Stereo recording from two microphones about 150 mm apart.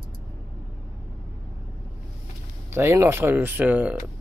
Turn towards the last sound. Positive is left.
turn(degrees=-10)  # may be behind; listen again after turning